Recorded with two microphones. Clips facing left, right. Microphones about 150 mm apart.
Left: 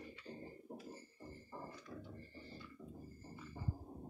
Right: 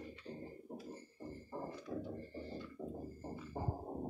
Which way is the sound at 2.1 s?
60° right (ahead or behind).